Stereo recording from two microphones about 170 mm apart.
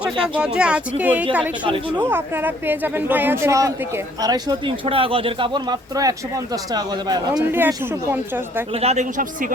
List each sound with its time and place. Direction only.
0.0 s speech: 5° right (ahead or behind); by 7.4 s 25° right (ahead or behind)
8.7 s a man's voice: 40° right (ahead or behind)